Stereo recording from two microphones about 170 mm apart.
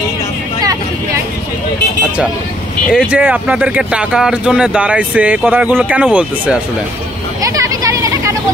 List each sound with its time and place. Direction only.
2.9 s speech: 5° right (ahead or behind)
7.4 s vehicle: 20° right (ahead or behind)